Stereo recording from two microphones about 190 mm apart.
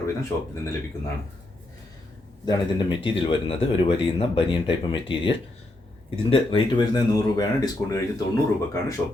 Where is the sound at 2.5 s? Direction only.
25° left (ahead or behind).